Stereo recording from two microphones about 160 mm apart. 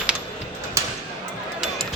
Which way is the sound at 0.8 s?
20° right (ahead or behind).